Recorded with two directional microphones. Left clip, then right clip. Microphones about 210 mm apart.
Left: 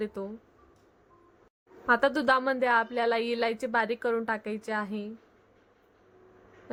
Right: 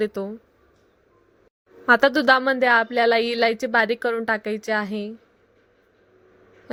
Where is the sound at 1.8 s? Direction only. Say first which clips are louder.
Right 8 dB; 20° right (ahead or behind).